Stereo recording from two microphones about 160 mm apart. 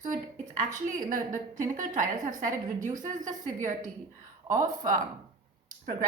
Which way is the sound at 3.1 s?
50° right (ahead or behind).